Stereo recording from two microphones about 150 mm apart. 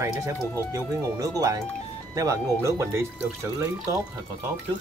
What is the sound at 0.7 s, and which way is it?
Speech, 20° right (ahead or behind).